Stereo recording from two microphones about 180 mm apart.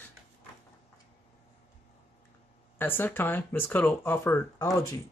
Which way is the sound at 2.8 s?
10° left (ahead or behind).